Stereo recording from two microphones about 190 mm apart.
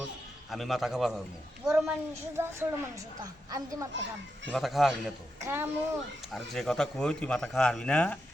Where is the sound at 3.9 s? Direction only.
70° right (ahead or behind).